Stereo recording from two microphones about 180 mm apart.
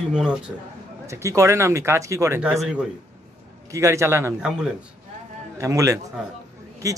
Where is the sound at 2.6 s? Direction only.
5° right (ahead or behind).